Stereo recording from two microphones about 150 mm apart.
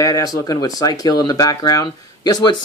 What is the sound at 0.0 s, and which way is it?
Speech, 25° left (ahead or behind).